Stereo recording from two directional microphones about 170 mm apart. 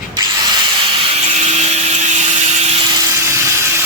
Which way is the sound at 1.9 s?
40° right (ahead or behind).